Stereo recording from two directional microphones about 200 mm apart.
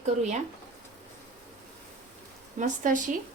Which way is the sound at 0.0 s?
35° right (ahead or behind).